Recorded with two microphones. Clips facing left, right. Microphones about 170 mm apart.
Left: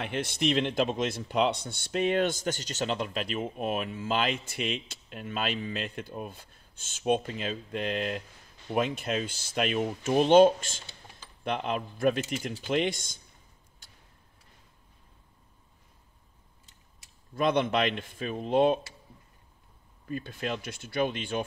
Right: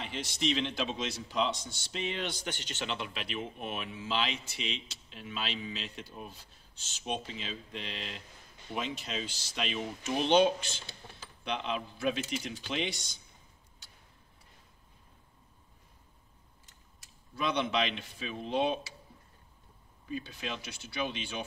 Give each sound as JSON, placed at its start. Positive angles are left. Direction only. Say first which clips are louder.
{"t": 0.0, "sound": "speech", "louder": "left 5 dB", "side_deg": 55}
{"t": 13.8, "sound": "tick-tock", "louder": "left 1 dB", "side_deg": 50}
{"t": 17.4, "sound": "speech", "louder": "left 5 dB", "side_deg": 50}
{"t": 20.1, "sound": "speech", "louder": "left 5 dB", "side_deg": 50}